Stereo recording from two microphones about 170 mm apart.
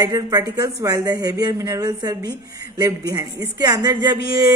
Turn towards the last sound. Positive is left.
turn(degrees=-20)  # may be behind; listen again after turning